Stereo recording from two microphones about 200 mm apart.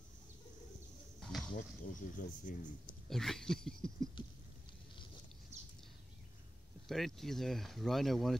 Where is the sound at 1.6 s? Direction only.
40° left (ahead or behind).